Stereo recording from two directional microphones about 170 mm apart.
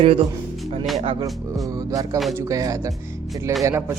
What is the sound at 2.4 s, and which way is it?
Speech, 20° right (ahead or behind).